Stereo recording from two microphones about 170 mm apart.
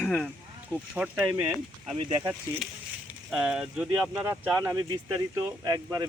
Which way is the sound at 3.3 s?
5° right (ahead or behind).